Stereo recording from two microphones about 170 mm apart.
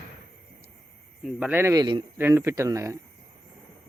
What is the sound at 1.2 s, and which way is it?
Speech, 5° right (ahead or behind).